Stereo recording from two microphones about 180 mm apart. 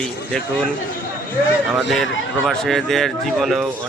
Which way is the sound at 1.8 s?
Centre (ahead or behind).